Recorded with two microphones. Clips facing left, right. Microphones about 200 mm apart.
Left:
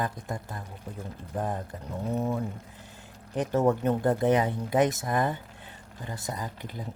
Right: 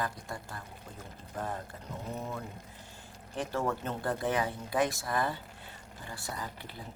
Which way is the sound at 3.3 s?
20° left (ahead or behind).